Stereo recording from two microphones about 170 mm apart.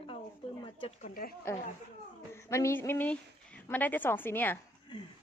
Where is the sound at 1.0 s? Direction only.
60° left (ahead or behind).